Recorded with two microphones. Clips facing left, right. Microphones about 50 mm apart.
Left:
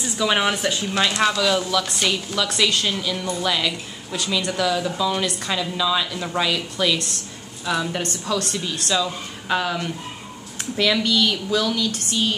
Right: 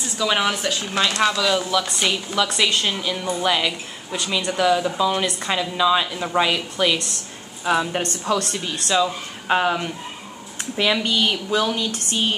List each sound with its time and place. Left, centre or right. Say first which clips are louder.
0.2 s a woman's voice: left 1 dB; centre
8.0 s speech: right 2 dB; right